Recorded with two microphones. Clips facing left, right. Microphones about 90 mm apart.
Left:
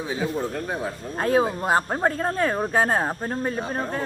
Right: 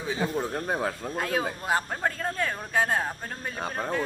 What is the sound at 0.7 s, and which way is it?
Speech, 60° right (ahead or behind).